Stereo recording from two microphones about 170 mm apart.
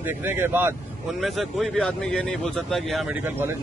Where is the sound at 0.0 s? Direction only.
15° right (ahead or behind).